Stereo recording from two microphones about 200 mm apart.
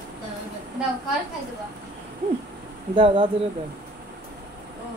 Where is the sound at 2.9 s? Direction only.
25° right (ahead or behind).